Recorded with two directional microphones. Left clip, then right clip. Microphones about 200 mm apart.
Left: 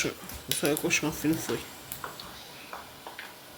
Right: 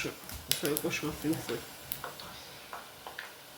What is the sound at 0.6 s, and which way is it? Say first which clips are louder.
Speech: left 8 dB; 50° left (ahead or behind).